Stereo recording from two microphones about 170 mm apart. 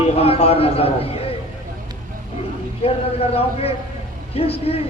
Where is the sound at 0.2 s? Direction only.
35° left (ahead or behind).